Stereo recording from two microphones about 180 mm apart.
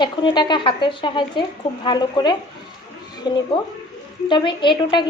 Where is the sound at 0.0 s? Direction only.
25° left (ahead or behind).